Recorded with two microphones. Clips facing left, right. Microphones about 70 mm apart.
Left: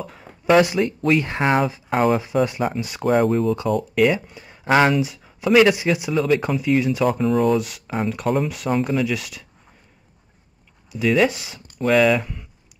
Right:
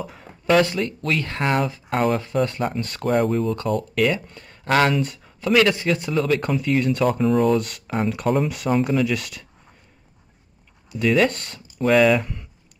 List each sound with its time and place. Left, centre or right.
0.0 s speech: centre
0.5 s speech: centre
1.7 s speech: centre
10.9 s speech: centre